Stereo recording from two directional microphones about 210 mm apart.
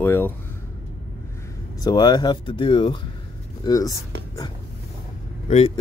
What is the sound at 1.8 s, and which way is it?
Speech, 20° left (ahead or behind).